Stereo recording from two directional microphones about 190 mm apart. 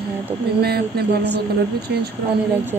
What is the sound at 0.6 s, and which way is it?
Speech, 55° right (ahead or behind).